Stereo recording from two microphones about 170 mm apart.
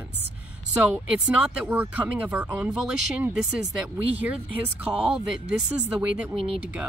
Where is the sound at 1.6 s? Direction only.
10° right (ahead or behind).